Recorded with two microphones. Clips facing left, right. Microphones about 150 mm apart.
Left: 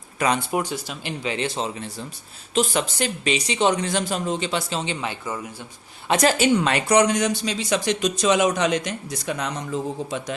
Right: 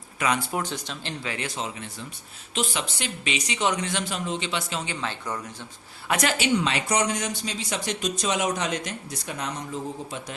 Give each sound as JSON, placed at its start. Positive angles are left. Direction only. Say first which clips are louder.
{"t": 0.3, "sound": "speech", "louder": "left 4 dB", "side_deg": 15}
{"t": 2.6, "sound": "speech", "louder": "left 7 dB", "side_deg": 45}
{"t": 4.9, "sound": "speech", "louder": "left 3 dB", "side_deg": 15}
{"t": 6.1, "sound": "speech", "louder": "left 6 dB", "side_deg": 30}
{"t": 6.3, "sound": "speech", "louder": "left 5 dB", "side_deg": 50}